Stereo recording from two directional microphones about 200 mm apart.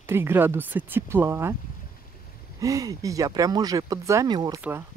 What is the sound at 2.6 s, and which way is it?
Speech, 15° right (ahead or behind).